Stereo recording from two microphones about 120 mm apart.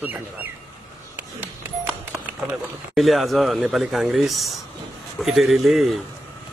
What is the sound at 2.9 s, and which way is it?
Speech, centre (ahead or behind).